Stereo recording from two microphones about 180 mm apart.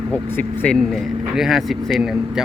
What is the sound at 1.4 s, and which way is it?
Speech, centre (ahead or behind).